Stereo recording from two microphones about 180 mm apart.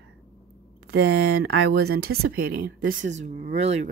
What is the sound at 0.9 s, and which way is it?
Speech, 60° right (ahead or behind).